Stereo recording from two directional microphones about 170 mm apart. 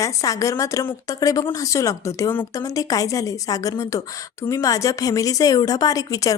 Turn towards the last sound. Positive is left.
turn(degrees=20)  # may be behind; listen again after turning